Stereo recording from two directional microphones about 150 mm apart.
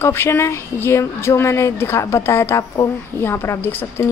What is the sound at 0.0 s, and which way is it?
Speech, 15° left (ahead or behind).